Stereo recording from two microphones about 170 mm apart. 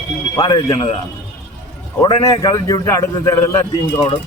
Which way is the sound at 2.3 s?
20° left (ahead or behind).